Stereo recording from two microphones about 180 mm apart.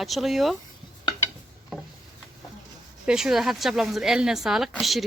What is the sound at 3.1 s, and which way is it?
Speech, 5° right (ahead or behind).